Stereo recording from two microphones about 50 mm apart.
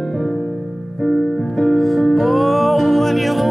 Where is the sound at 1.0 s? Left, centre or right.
Centre.